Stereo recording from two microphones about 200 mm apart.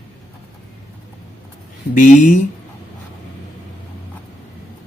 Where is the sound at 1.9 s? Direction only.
40° left (ahead or behind).